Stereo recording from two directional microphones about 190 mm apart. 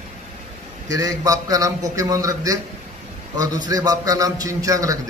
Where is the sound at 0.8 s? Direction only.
20° right (ahead or behind).